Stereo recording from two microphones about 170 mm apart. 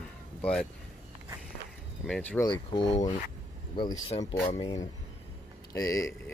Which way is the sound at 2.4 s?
30° left (ahead or behind).